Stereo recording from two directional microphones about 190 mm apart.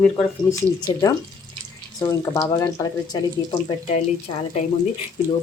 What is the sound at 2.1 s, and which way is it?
Speech, 15° left (ahead or behind).